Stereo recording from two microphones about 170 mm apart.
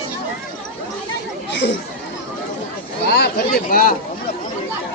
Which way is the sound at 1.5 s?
90° left.